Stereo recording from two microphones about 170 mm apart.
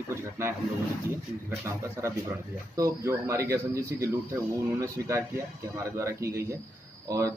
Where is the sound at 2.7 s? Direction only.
20° right (ahead or behind).